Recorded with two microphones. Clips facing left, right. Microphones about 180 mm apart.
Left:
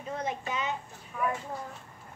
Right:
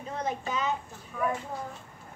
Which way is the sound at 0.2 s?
40° right (ahead or behind).